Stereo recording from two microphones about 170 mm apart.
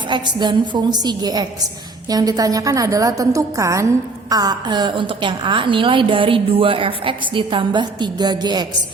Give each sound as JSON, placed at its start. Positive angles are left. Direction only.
{"t": 0.1, "sound": "a woman's voice", "side_deg": -25}